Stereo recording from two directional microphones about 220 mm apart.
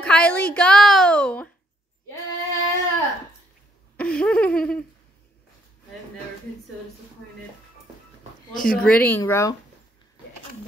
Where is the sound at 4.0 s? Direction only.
5° left (ahead or behind).